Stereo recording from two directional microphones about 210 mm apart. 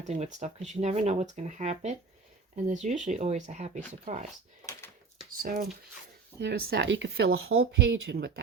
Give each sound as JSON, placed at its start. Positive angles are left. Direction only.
{"t": 0.1, "sound": "speech", "side_deg": -35}
{"t": 5.3, "sound": "speech", "side_deg": -40}
{"t": 6.4, "sound": "speech", "side_deg": -55}
{"t": 7.3, "sound": "speech", "side_deg": -75}
{"t": 8.0, "sound": "speech", "side_deg": -50}